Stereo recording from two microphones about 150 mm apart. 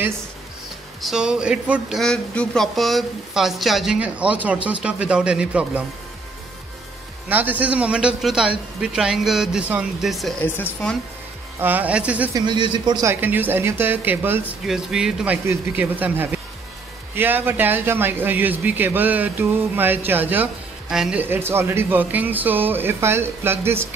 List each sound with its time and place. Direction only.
1.0 s speech: 5° right (ahead or behind)
7.2 s speech: 10° right (ahead or behind)
10.4 s speech: 10° left (ahead or behind)
11.6 s a man's voice: 10° right (ahead or behind)
12.4 s a man's voice: 30° right (ahead or behind)
13.1 s a man's voice: 10° right (ahead or behind)
15.4 s a man's voice: 15° right (ahead or behind)